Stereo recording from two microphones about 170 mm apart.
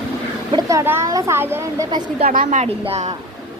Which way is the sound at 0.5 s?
20° right (ahead or behind).